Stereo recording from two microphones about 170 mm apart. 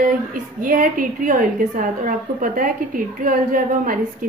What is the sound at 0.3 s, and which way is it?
A woman's voice, 55° right (ahead or behind).